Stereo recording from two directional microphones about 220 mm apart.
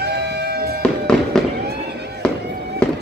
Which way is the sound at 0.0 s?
50° right (ahead or behind).